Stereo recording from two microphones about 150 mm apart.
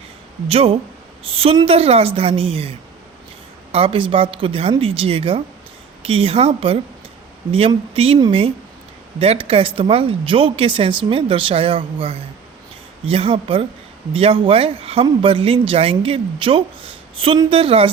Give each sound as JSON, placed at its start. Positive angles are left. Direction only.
{"t": 0.4, "sound": "speech", "side_deg": -40}
{"t": 7.9, "sound": "speech", "side_deg": -40}